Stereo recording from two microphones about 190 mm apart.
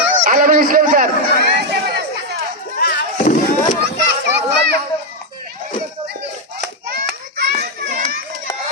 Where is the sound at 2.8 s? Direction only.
50° left (ahead or behind).